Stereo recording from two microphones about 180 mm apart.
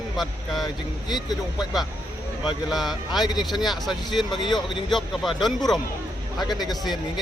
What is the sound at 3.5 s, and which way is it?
Speech, centre (ahead or behind).